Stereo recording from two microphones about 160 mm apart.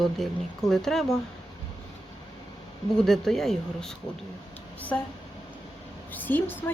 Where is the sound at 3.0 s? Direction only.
5° left (ahead or behind).